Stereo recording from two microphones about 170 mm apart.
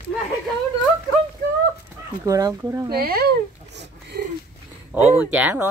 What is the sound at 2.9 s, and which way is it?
Speech, 65° right (ahead or behind).